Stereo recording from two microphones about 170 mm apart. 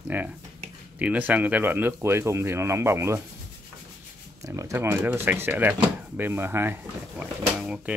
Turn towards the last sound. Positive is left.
turn(degrees=-5)  # may be behind; listen again after turning